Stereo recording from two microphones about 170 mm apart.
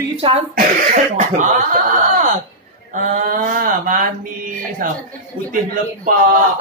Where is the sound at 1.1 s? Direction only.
45° right (ahead or behind).